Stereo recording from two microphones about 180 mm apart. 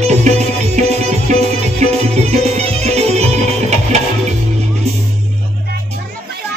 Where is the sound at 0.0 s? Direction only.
40° right (ahead or behind).